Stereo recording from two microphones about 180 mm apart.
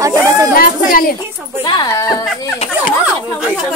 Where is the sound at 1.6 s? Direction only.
20° left (ahead or behind).